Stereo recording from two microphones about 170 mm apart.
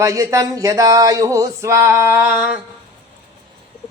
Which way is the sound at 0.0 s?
20° right (ahead or behind).